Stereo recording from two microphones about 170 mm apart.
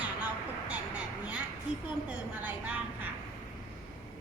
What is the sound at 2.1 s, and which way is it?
Speech, 5° right (ahead or behind).